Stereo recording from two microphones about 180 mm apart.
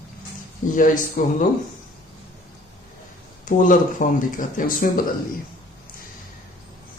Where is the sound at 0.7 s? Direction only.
45° left (ahead or behind).